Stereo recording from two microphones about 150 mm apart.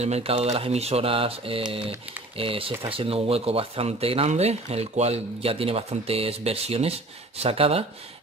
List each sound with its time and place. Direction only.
0.0 s speech: 45° right (ahead or behind)